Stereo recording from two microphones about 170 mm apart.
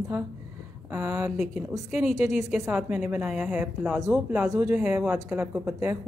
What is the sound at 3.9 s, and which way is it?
Speech, centre (ahead or behind).